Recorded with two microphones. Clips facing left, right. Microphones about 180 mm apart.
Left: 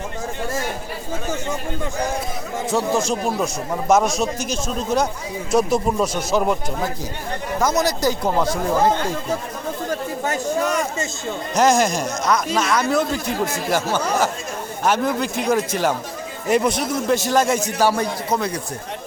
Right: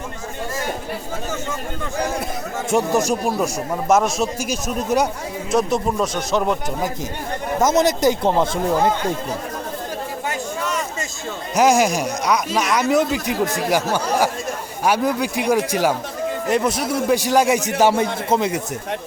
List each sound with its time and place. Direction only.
2.7 s speech: 15° right (ahead or behind)
5.5 s speech: centre (ahead or behind)
7.6 s speech: 20° right (ahead or behind)
10.2 s a sound: 45° left (ahead or behind)
11.5 s speech: 10° right (ahead or behind)